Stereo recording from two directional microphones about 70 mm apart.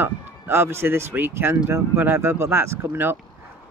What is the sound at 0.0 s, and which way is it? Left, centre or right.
A man's voice, right.